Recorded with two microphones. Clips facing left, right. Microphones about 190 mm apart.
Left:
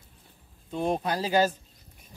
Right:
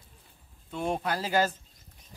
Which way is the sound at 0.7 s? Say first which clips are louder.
Left 3 dB; 15° left (ahead or behind).